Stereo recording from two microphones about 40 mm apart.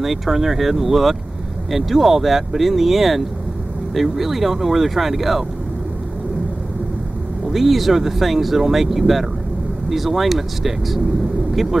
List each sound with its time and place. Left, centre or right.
0.0 s speech: centre
7.4 s speech: centre